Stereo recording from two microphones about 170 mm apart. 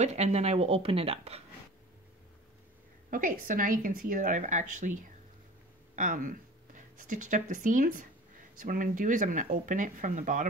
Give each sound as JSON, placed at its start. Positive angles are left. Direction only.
{"t": 0.0, "sound": "speech", "side_deg": -40}
{"t": 3.1, "sound": "speech", "side_deg": -50}